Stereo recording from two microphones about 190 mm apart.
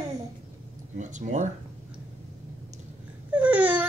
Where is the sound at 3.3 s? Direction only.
5° right (ahead or behind).